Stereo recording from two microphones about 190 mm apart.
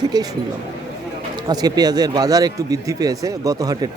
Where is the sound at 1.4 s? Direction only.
20° right (ahead or behind).